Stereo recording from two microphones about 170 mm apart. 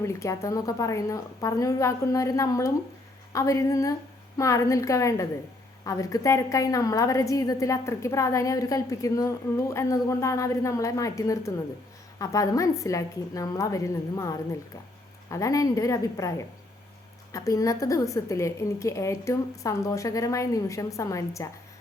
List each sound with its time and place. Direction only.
0.0 s a woman's voice: 15° left (ahead or behind)